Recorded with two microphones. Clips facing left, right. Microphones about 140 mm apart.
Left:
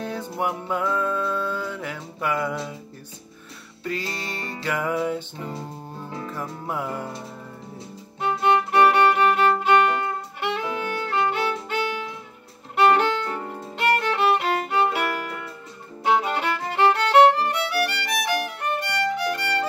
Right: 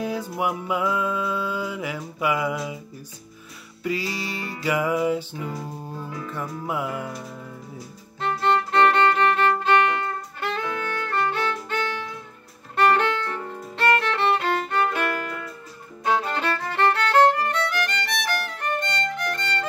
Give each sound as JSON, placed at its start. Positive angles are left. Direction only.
{"t": 0.0, "sound": "music", "side_deg": -5}
{"t": 3.8, "sound": "music", "side_deg": -5}
{"t": 6.0, "sound": "music", "side_deg": 30}
{"t": 6.6, "sound": "music", "side_deg": -5}
{"t": 8.2, "sound": "music", "side_deg": 10}
{"t": 12.7, "sound": "violin", "side_deg": 15}
{"t": 16.1, "sound": "music", "side_deg": 15}
{"t": 19.3, "sound": "violin", "side_deg": 10}